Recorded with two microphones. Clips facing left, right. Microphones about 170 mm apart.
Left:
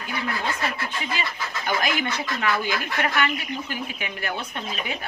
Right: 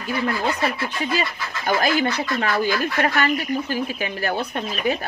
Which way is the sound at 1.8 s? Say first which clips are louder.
Right 7 dB; 35° right (ahead or behind).